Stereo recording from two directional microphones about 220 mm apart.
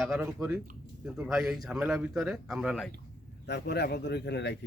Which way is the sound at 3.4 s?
50° left (ahead or behind).